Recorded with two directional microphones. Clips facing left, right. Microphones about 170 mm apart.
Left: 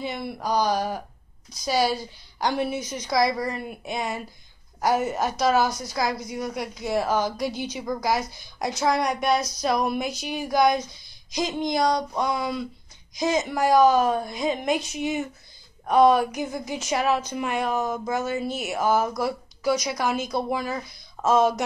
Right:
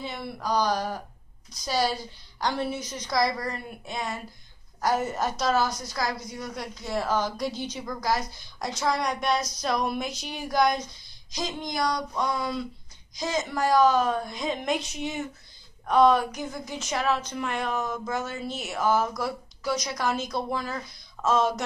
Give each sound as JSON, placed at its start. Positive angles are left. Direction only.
{"t": 0.0, "sound": "speech", "side_deg": 15}
{"t": 9.0, "sound": "a sound", "side_deg": 5}
{"t": 11.3, "sound": "speech", "side_deg": 20}